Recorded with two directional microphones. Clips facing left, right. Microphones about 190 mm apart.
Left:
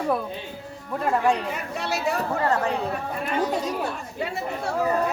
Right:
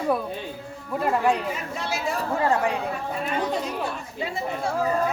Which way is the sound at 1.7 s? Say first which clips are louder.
Left 4 dB; 65° left (ahead or behind).